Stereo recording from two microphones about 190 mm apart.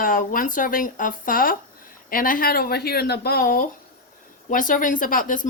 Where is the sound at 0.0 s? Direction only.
45° left (ahead or behind).